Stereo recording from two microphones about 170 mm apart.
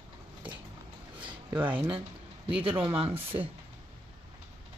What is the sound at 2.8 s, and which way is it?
Speech, 35° right (ahead or behind).